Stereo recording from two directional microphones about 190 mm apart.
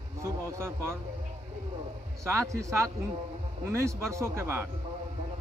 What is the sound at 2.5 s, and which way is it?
A man's voice, 15° right (ahead or behind).